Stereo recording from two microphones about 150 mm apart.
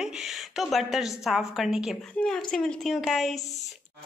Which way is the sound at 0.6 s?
Centre (ahead or behind).